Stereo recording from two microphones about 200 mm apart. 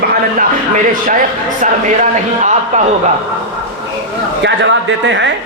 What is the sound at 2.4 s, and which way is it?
Speech, 35° right (ahead or behind).